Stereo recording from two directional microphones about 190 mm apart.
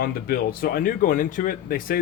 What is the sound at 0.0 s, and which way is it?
Speech, 50° left (ahead or behind).